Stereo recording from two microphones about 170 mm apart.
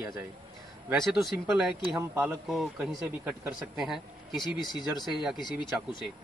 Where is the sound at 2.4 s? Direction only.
Centre (ahead or behind).